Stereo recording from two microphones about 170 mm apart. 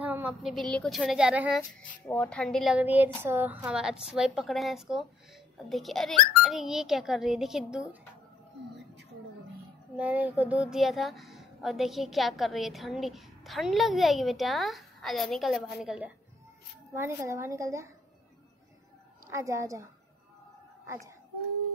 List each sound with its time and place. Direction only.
0.0 s a woman's voice: 10° right (ahead or behind)
1.6 s speech: 10° left (ahead or behind)
2.8 s a woman's voice: 10° right (ahead or behind)
9.9 s a woman's voice: 10° right (ahead or behind)
16.9 s a woman's voice: 15° right (ahead or behind)
19.3 s a woman's voice: 15° right (ahead or behind)